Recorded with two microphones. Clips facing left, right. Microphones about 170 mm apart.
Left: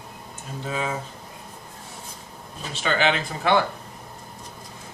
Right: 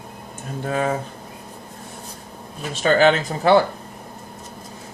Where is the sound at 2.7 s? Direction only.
45° right (ahead or behind).